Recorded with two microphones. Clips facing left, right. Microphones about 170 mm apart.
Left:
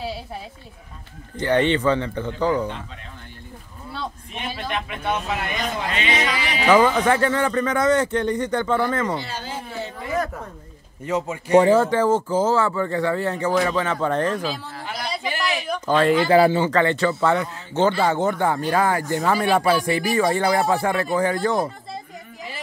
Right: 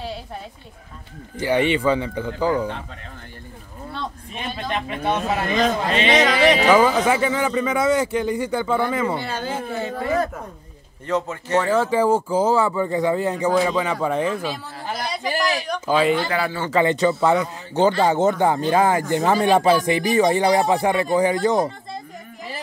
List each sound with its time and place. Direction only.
1.4 s speech: 10° right (ahead or behind)
3.9 s a sound: 5° left (ahead or behind)
4.6 s speech: 35° right (ahead or behind)
6.0 s speech: 90° right
6.7 s speech: 10° right (ahead or behind)
9.2 s speech: 55° right (ahead or behind)
11.1 s speech: 10° left (ahead or behind)
11.8 s speech: 10° right (ahead or behind)
15.2 s a sound: 40° right (ahead or behind)
15.8 s speech: 5° right (ahead or behind)
16.3 s speech: 30° left (ahead or behind)
16.7 s speech: 15° right (ahead or behind)